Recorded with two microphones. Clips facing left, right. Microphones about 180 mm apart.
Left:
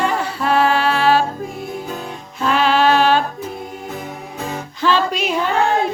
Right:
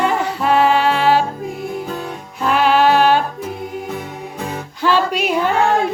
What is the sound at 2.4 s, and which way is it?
Music, 15° right (ahead or behind).